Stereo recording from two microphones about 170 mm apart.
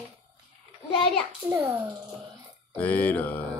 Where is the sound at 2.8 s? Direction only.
10° left (ahead or behind).